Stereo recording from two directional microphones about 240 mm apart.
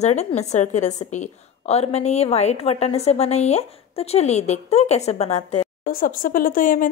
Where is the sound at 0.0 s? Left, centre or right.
Left.